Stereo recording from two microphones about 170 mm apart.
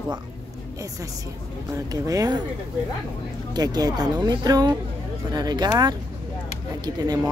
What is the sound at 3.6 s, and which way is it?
Speech, 25° right (ahead or behind).